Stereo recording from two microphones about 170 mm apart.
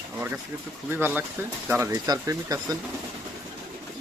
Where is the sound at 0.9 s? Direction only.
10° right (ahead or behind).